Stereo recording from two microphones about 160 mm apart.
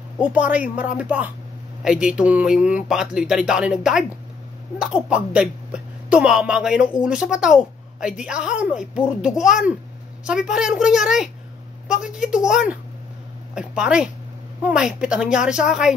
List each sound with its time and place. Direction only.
0.2 s a woman's voice: 10° right (ahead or behind)